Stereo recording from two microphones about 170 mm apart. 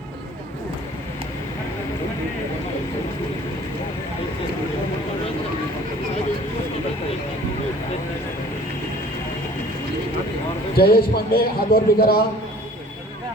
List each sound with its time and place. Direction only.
10.8 s a man's voice: 65° left (ahead or behind)